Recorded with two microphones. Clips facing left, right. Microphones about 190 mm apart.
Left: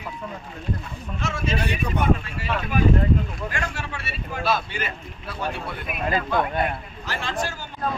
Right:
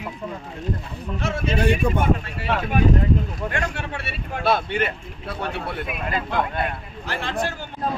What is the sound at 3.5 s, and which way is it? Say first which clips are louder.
Speech: right 3 dB; 60° right (ahead or behind).